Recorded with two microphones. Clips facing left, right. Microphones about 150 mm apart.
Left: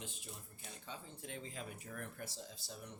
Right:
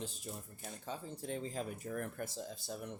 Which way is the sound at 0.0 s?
40° right (ahead or behind).